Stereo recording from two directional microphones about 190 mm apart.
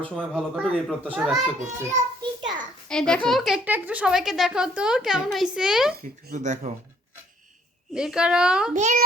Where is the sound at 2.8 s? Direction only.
5° left (ahead or behind).